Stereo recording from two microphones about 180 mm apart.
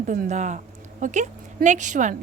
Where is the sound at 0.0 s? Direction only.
45° right (ahead or behind).